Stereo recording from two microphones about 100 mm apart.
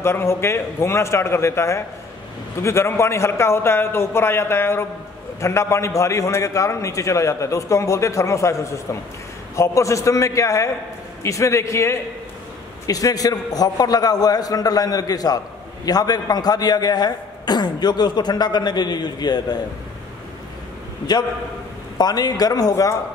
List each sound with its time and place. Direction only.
0.0 s a man's voice: 25° left (ahead or behind); by 19.6 s 45° left (ahead or behind)
21.9 s a man's voice: 40° left (ahead or behind)